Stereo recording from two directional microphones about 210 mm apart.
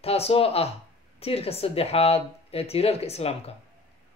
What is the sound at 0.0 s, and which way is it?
Speech, 30° left (ahead or behind).